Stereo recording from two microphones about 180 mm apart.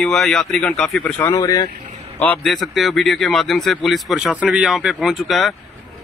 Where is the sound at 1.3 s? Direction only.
20° left (ahead or behind).